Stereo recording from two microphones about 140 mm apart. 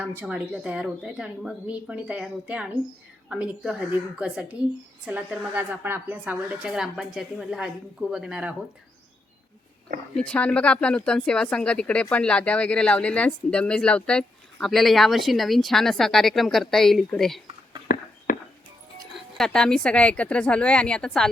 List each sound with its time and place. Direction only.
0.0 s a woman's voice: 15° right (ahead or behind)
10.2 s speech: 10° left (ahead or behind)
18.3 s music: 80° left
19.1 s speech: 5° left (ahead or behind)